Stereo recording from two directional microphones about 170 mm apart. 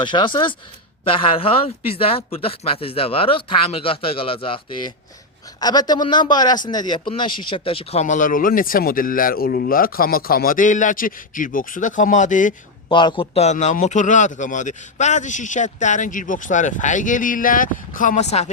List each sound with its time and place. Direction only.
0.0 s a man's voice: 25° left (ahead or behind); by 12.5 s 50° left (ahead or behind)
12.9 s a man's voice: 30° left (ahead or behind)